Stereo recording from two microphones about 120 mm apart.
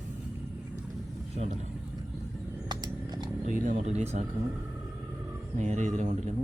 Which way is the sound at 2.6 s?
35° right (ahead or behind).